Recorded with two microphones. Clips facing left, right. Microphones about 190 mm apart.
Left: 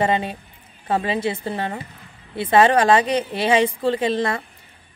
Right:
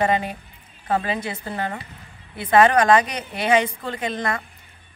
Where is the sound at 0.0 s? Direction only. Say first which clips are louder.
Left 1 dB; 25° left (ahead or behind).